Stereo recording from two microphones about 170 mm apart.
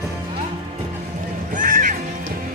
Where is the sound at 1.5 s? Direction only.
50° right (ahead or behind).